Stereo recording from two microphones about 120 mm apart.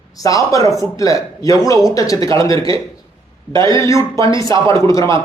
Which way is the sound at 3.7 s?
25° left (ahead or behind).